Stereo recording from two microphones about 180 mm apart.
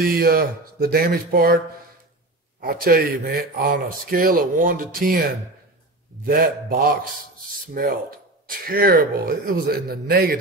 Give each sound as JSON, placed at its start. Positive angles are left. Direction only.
{"t": 0.0, "sound": "speech", "side_deg": -55}
{"t": 2.6, "sound": "speech", "side_deg": -55}
{"t": 6.2, "sound": "speech", "side_deg": -55}